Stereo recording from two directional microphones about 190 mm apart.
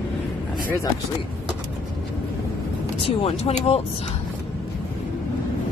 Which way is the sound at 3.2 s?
30° left (ahead or behind).